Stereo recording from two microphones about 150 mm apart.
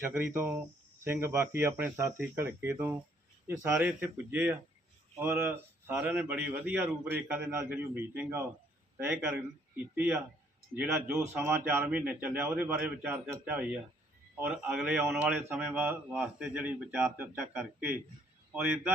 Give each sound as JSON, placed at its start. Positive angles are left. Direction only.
{"t": 0.0, "sound": "a man's voice", "side_deg": -15}
{"t": 3.7, "sound": "speech", "side_deg": -5}